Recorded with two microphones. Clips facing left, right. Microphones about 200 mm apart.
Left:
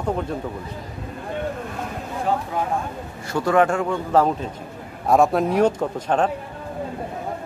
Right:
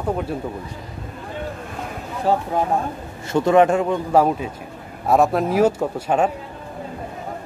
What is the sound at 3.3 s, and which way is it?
A man's voice, 20° right (ahead or behind).